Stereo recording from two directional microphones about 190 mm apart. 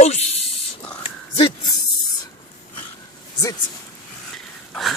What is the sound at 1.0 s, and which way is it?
Dog, 30° left (ahead or behind).